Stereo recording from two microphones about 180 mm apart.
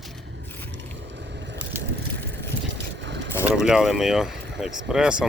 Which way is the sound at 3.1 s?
75° right (ahead or behind).